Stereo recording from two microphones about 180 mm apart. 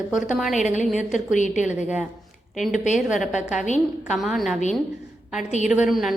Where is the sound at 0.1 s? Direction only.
5° right (ahead or behind).